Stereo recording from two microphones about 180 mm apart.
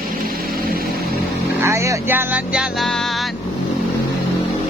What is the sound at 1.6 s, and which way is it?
Vehicle, 15° right (ahead or behind).